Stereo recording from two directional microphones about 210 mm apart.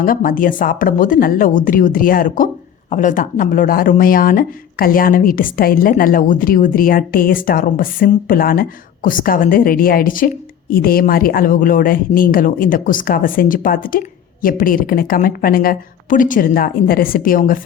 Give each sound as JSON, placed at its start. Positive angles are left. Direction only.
{"t": 0.0, "sound": "a woman's voice", "side_deg": 40}